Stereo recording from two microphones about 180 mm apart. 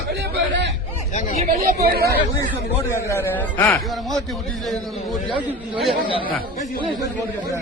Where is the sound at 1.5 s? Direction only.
55° right (ahead or behind).